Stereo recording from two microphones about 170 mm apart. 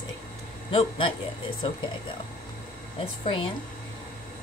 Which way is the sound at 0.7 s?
30° left (ahead or behind).